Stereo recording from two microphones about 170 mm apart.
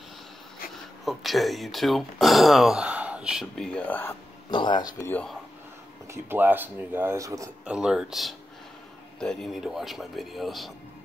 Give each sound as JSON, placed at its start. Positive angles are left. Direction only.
{"t": 1.0, "sound": "speech", "side_deg": 0}
{"t": 4.5, "sound": "speech", "side_deg": 25}
{"t": 4.9, "sound": "speech", "side_deg": 15}
{"t": 6.1, "sound": "speech", "side_deg": -10}
{"t": 7.6, "sound": "speech", "side_deg": -5}